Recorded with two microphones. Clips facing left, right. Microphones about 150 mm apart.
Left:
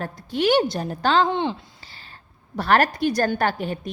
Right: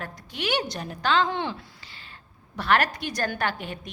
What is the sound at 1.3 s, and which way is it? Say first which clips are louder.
Speech: left 5 dB; 20° left (ahead or behind).